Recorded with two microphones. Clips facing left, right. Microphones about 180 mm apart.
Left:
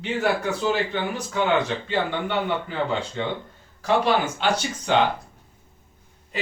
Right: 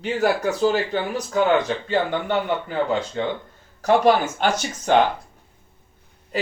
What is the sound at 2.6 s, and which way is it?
Speech, 45° right (ahead or behind).